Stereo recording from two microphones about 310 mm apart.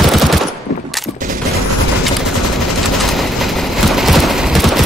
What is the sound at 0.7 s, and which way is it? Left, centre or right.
Gunshot, left.